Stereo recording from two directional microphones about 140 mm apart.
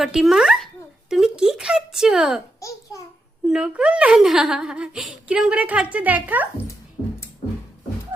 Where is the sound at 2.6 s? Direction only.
25° left (ahead or behind).